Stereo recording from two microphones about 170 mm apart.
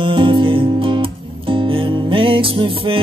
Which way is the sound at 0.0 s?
30° right (ahead or behind).